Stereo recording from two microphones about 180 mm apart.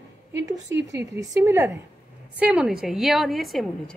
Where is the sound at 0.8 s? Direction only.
15° right (ahead or behind).